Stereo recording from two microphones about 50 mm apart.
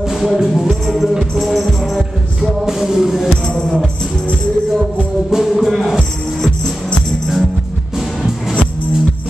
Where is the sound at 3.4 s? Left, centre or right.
Centre.